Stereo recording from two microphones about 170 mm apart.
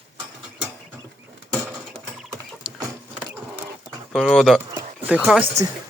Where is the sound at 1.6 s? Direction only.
5° right (ahead or behind).